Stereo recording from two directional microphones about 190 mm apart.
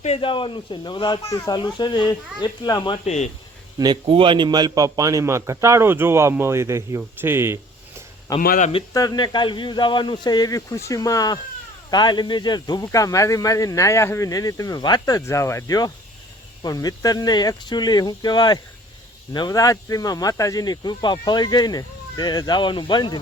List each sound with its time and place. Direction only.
0.0 s speech: 30° left (ahead or behind)
3.8 s a man's voice: 25° right (ahead or behind)
8.4 s speech: 45° left (ahead or behind)
8.7 s speech: 20° left (ahead or behind)